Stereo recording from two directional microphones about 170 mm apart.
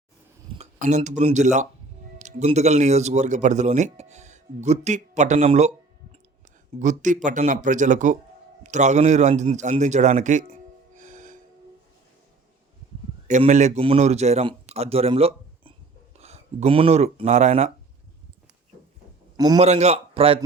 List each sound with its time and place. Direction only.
0.6 s speech: 40° right (ahead or behind)
6.7 s a man's voice: 50° right (ahead or behind)
13.5 s speech: 45° right (ahead or behind)
19.5 s speech: 40° right (ahead or behind)